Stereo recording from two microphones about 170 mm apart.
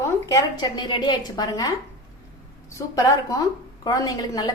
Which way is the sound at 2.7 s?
20° left (ahead or behind).